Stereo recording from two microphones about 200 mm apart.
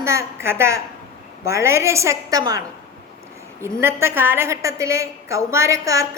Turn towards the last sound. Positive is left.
turn(degrees=-15)  # may be behind; listen again after turning